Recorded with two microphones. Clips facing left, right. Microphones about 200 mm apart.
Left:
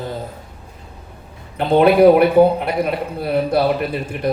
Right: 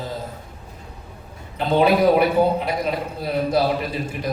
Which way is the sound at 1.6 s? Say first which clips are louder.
Left 6 dB; 55° left (ahead or behind).